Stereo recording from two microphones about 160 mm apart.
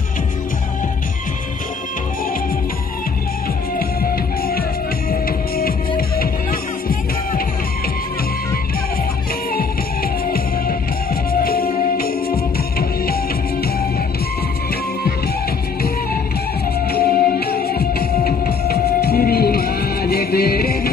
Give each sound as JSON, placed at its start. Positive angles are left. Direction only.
{"t": 3.7, "sound": "music", "side_deg": 65}
{"t": 11.4, "sound": "music", "side_deg": 65}
{"t": 16.9, "sound": "music", "side_deg": 75}